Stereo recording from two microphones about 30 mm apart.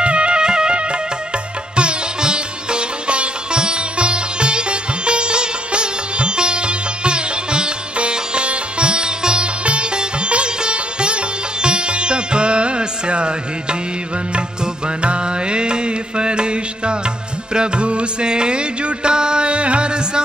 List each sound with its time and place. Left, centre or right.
0.0 s music: right
1.8 s sitar: right
15.0 s mantra: right
17.6 s music: right